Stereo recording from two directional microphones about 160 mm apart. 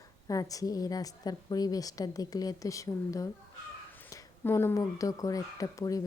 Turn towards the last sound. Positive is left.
turn(degrees=20)  # may be behind; listen again after turning